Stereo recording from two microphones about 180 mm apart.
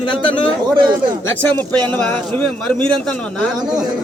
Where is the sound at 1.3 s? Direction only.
10° left (ahead or behind).